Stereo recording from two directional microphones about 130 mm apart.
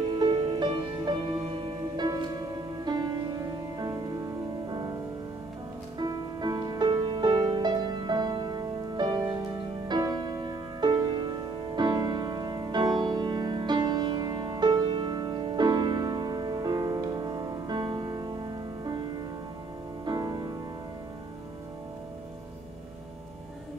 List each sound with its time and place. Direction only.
0.2 s music: 35° right (ahead or behind)
5.9 s music: 30° right (ahead or behind)
20.1 s music: 30° right (ahead or behind)